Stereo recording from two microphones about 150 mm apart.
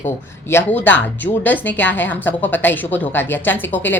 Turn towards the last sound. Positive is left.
turn(degrees=15)  # may be behind; listen again after turning